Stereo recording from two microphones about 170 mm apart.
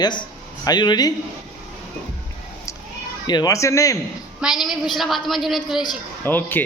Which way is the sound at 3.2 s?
25° left (ahead or behind).